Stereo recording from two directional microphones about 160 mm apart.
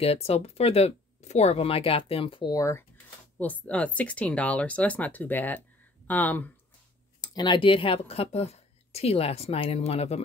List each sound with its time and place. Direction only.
0.0 s speech: 40° left (ahead or behind); by 2.8 s 20° left (ahead or behind)
3.3 s speech: 10° left (ahead or behind)
7.2 s speech: 25° left (ahead or behind)